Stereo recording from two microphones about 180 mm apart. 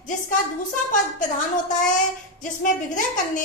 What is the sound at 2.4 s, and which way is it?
A woman's voice, 45° left (ahead or behind).